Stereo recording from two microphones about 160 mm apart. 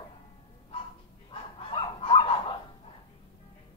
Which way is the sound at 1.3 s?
35° left (ahead or behind).